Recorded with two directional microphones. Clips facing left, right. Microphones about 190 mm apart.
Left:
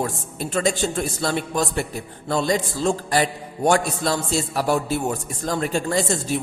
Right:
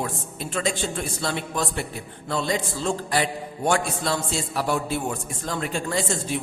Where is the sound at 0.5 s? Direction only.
40° left (ahead or behind).